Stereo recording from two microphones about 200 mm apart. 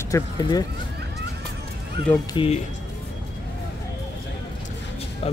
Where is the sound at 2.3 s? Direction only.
25° left (ahead or behind).